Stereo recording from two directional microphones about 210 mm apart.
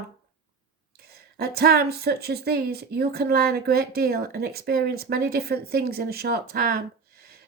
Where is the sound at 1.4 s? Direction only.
50° right (ahead or behind).